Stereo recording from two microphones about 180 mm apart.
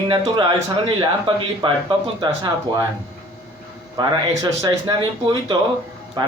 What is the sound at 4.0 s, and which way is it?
A man's voice, 20° right (ahead or behind).